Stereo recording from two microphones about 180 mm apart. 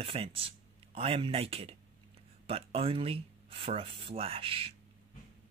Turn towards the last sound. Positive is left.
turn(degrees=-30)  # may be behind; listen again after turning